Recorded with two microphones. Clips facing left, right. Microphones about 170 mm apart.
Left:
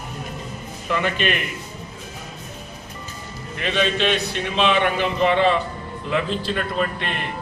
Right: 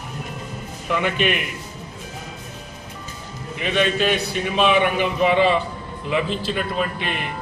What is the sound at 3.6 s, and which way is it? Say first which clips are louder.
A man's voice: right 1 dB; 10° right (ahead or behind).